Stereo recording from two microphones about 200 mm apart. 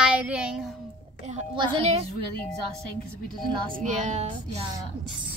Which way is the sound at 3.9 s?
35° right (ahead or behind).